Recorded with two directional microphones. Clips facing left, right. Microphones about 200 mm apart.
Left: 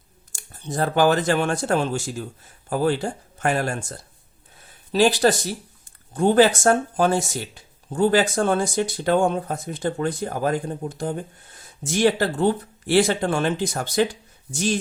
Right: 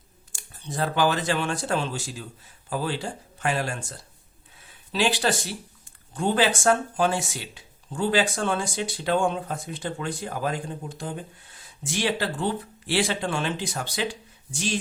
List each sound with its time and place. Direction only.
0.3 s speech: 45° left (ahead or behind)
4.9 s speech: 40° left (ahead or behind)